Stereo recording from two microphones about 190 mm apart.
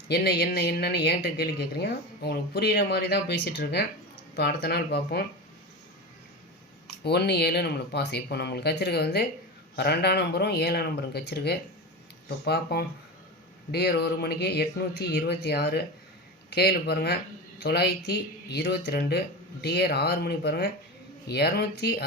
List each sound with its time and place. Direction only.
0.1 s speech: 55° left (ahead or behind)
7.0 s speech: 60° left (ahead or behind)
12.7 s speech: 55° left (ahead or behind)